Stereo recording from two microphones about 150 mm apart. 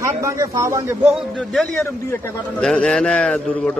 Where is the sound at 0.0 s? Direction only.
20° right (ahead or behind).